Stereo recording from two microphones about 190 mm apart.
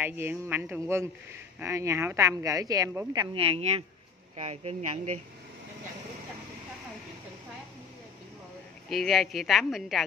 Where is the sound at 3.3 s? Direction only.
30° right (ahead or behind).